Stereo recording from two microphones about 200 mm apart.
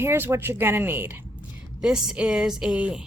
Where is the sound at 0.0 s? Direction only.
10° right (ahead or behind).